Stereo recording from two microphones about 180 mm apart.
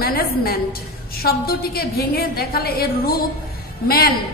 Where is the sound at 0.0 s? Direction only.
55° left (ahead or behind).